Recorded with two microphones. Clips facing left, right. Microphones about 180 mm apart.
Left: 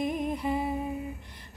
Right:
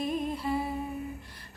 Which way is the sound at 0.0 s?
15° left (ahead or behind).